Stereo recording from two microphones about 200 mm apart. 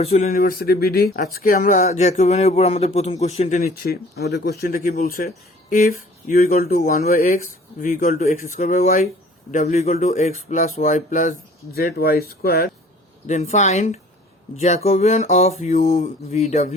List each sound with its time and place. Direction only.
0.0 s speech: 30° left (ahead or behind)
0.3 s speech: 45° left (ahead or behind)
3.6 s speech: 50° left (ahead or behind)
13.2 s speech: 35° left (ahead or behind)